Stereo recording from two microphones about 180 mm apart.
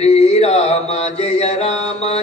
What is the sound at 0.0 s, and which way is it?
Mantra, 35° left (ahead or behind).